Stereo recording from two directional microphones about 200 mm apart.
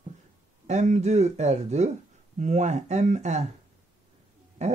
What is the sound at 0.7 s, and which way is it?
Speech, 35° right (ahead or behind).